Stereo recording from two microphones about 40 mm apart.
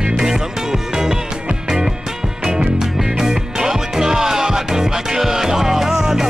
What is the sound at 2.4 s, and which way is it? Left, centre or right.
Music, centre.